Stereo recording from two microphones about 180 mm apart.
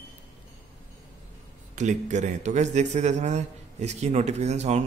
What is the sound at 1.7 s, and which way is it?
Speech, 40° right (ahead or behind).